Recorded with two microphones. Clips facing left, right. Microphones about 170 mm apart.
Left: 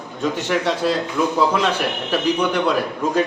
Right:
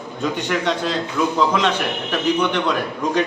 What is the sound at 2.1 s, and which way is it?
Speech, 10° left (ahead or behind).